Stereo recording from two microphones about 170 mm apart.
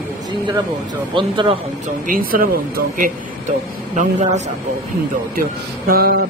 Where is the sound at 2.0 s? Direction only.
55° right (ahead or behind).